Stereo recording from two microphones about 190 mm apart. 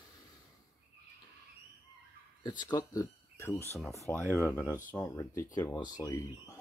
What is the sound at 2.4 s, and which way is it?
Speech, 20° left (ahead or behind).